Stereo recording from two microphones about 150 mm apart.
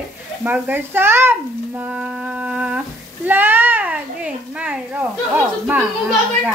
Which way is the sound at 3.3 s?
15° right (ahead or behind).